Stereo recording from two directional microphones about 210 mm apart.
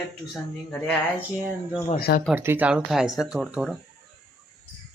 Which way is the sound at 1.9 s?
45° left (ahead or behind).